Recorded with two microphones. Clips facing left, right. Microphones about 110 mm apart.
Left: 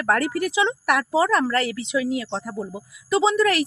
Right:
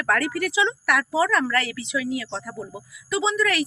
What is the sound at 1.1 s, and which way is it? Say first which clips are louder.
Speech: left 2 dB; 25° left (ahead or behind).